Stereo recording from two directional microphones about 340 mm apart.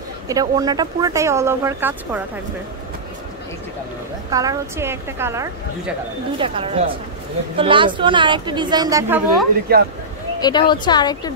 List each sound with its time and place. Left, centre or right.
0.3 s a woman's voice: centre
4.3 s a woman's voice: centre
9.7 s speech: right
10.4 s a woman's voice: centre